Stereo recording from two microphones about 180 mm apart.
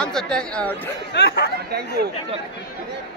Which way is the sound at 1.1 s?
70° left (ahead or behind).